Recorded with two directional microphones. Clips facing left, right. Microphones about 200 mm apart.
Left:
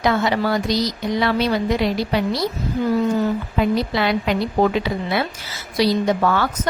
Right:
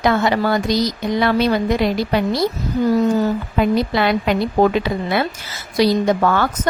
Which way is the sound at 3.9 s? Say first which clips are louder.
Right 2 dB; 55° right (ahead or behind).